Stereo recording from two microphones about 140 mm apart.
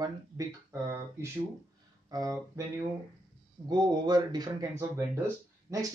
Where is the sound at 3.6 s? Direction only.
30° right (ahead or behind).